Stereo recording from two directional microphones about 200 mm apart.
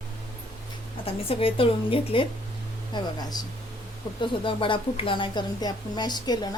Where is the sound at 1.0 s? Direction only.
30° left (ahead or behind).